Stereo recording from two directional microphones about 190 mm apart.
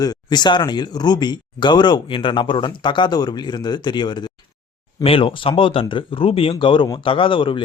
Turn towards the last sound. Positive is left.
turn(degrees=25)  # may be behind; listen again after turning